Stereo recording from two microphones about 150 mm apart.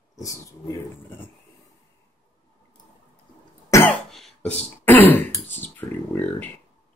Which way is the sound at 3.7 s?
15° left (ahead or behind).